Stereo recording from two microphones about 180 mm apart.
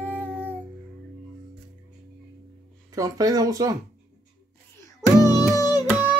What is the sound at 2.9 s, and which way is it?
Speech, 20° right (ahead or behind).